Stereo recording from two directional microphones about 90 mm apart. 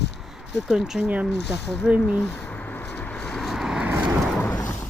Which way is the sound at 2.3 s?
20° left (ahead or behind).